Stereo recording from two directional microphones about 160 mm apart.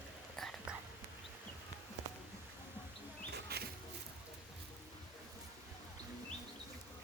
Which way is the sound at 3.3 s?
85° right.